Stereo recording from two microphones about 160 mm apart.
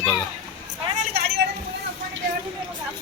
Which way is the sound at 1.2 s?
90° right.